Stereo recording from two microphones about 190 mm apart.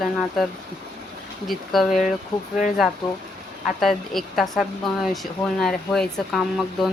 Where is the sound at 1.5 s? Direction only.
Centre (ahead or behind).